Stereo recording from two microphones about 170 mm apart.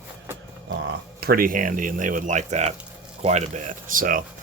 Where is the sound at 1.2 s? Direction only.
60° right (ahead or behind).